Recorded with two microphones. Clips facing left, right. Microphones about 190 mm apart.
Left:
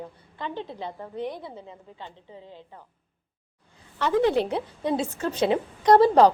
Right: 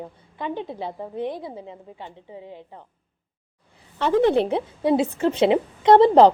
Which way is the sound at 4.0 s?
20° right (ahead or behind).